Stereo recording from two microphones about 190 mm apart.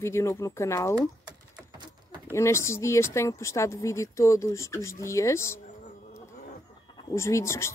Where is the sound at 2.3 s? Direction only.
15° left (ahead or behind).